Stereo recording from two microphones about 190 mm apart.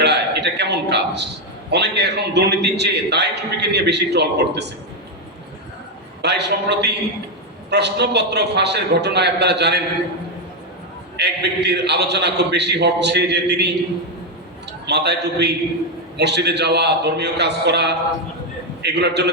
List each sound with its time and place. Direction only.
0.0 s a sound: 65° right (ahead or behind)
1.7 s a man's voice: 65° right (ahead or behind)
6.2 s a man's voice: 65° right (ahead or behind)
11.2 s a man's voice: 65° right (ahead or behind)
14.8 s a man's voice: 60° right (ahead or behind)